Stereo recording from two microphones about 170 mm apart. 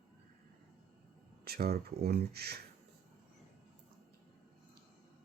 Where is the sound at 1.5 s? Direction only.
65° right (ahead or behind).